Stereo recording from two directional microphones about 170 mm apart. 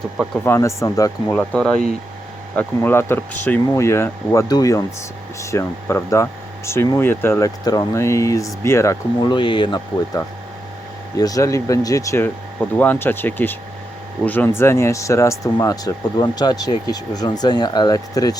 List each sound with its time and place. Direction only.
0.4 s speech: 15° left (ahead or behind)
1.3 s speech: 5° left (ahead or behind)